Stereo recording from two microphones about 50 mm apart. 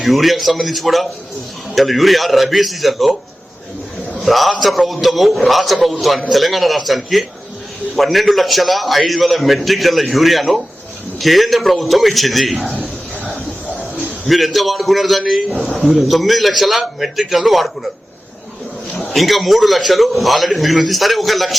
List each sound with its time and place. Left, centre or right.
0.0 s a man's voice: centre
4.2 s a man's voice: centre
12.7 s a sound: left
14.3 s a man's voice: centre
19.1 s a man's voice: centre